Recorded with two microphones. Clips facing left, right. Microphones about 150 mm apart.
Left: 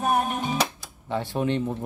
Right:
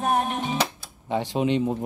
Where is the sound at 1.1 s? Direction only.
15° right (ahead or behind).